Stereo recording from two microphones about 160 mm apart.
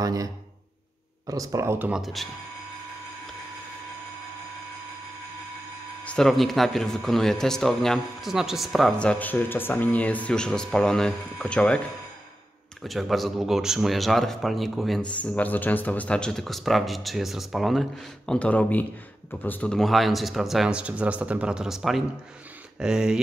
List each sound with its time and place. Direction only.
0.0 s speech: 20° right (ahead or behind)
2.0 s speech: centre (ahead or behind)
6.0 s speech: 5° left (ahead or behind)
12.8 s speech: centre (ahead or behind)